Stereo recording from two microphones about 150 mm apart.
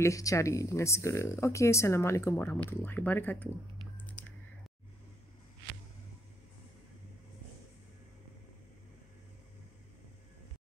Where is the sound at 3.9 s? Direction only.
10° left (ahead or behind).